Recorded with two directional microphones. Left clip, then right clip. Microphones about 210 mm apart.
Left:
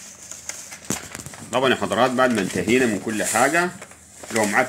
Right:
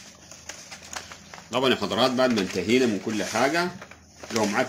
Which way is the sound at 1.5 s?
15° left (ahead or behind).